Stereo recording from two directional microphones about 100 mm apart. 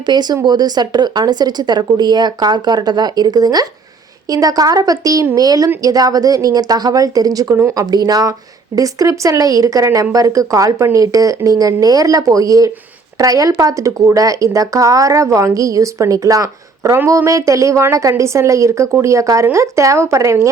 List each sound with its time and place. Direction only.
0.0 s speech: 45° right (ahead or behind); by 20.5 s 30° right (ahead or behind)